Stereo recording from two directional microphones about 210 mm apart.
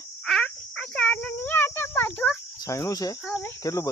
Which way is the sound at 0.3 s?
5° left (ahead or behind).